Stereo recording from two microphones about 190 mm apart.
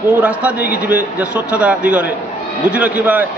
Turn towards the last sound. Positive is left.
turn(degrees=-5)  # may be behind; listen again after turning